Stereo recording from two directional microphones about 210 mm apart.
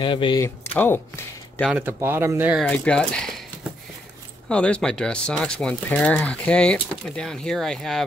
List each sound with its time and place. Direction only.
0.0 s speech: 25° left (ahead or behind)
0.7 s speech: 10° left (ahead or behind)
1.6 s speech: 5° right (ahead or behind)
2.6 s speech: 5° left (ahead or behind)
4.5 s speech: 5° left (ahead or behind)